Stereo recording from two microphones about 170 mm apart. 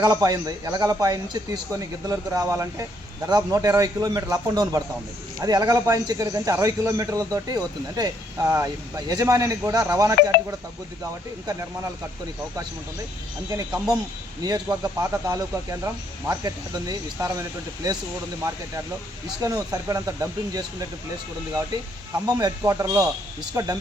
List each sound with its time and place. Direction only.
0.0 s speech: 20° right (ahead or behind)
13.5 s speech: 20° right (ahead or behind)
19.4 s speech: 20° right (ahead or behind)
22.1 s speech: 20° right (ahead or behind)